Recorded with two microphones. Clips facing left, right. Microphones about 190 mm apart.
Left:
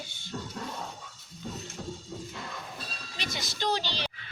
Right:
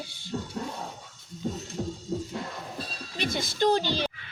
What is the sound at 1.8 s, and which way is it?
Music, 30° right (ahead or behind).